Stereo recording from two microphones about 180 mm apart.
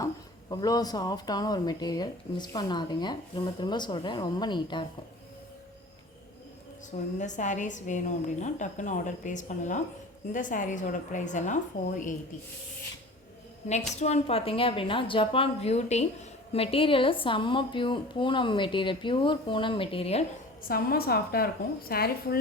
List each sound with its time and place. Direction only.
0.5 s speech: 20° left (ahead or behind)
7.2 s a woman's voice: 45° left (ahead or behind)
13.7 s a woman's voice: 40° left (ahead or behind)
20.7 s a woman's voice: 55° left (ahead or behind)